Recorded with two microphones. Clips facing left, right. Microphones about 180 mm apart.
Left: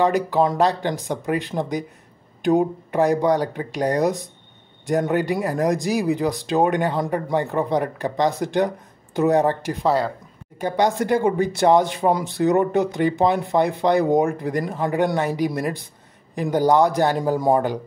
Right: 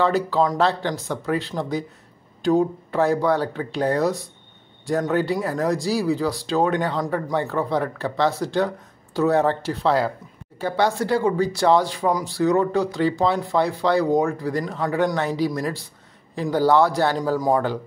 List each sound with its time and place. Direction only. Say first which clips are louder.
0.0 s speech: left 1 dB; 15° left (ahead or behind)